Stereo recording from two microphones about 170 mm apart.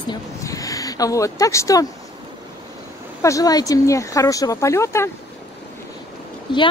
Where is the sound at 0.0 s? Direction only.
20° left (ahead or behind).